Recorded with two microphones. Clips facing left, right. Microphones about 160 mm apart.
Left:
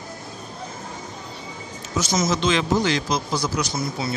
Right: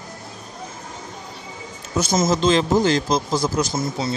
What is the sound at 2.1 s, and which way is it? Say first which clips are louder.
Speech: right 4 dB; 50° right (ahead or behind).